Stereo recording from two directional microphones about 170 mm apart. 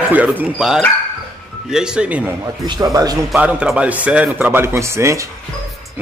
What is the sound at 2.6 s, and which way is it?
Speech, 20° right (ahead or behind).